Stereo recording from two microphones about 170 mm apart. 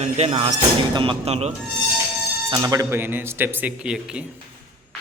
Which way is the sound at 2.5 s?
20° right (ahead or behind).